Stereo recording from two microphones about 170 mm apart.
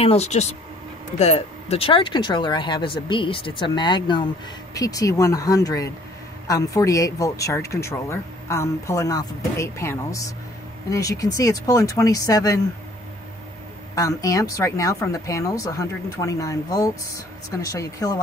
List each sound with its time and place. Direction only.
0.0 s speech: 40° left (ahead or behind); by 12.5 s 20° left (ahead or behind)
13.9 s speech: 20° left (ahead or behind)